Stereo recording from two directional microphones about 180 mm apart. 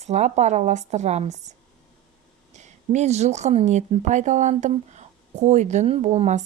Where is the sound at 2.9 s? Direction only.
40° right (ahead or behind).